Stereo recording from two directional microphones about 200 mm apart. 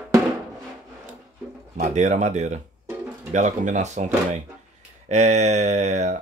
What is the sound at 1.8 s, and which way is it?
Speech, 35° right (ahead or behind).